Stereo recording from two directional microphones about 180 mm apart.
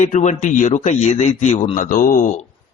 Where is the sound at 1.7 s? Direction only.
50° left (ahead or behind).